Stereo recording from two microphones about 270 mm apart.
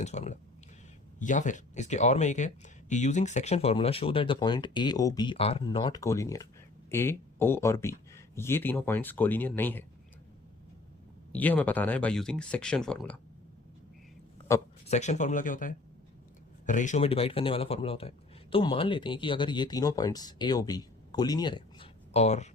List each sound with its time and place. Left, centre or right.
0.0 s a man's voice: left; by 9.8 s centre
11.3 s speech: centre
14.5 s speech: centre
14.8 s a man's voice: left